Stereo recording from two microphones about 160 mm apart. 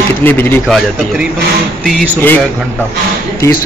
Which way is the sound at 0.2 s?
15° left (ahead or behind).